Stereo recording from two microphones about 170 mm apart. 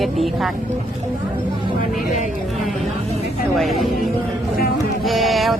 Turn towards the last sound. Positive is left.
turn(degrees=0)  # may be behind; listen again after turning